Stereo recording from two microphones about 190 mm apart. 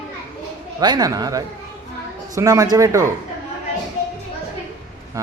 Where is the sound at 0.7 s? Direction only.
20° right (ahead or behind).